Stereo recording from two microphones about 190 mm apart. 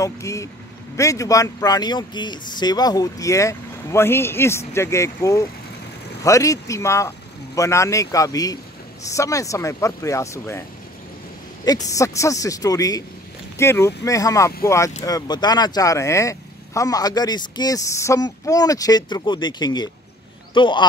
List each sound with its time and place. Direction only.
0.0 s speech: 15° left (ahead or behind)
11.6 s speech: 20° left (ahead or behind)